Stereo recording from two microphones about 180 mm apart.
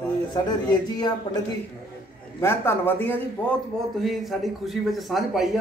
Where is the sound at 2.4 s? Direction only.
15° left (ahead or behind).